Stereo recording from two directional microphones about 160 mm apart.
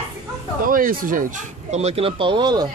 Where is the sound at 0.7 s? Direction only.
60° right (ahead or behind).